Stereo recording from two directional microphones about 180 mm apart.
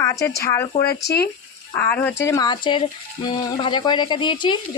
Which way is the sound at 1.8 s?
10° left (ahead or behind).